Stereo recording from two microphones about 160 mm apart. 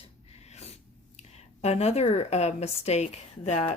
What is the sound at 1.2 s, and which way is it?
A woman's voice, 40° left (ahead or behind).